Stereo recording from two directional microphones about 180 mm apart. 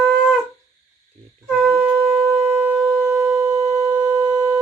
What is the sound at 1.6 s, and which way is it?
Shofar, 5° right (ahead or behind).